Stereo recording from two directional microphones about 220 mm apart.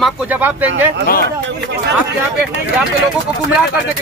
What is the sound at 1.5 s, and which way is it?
Speech, 50° right (ahead or behind).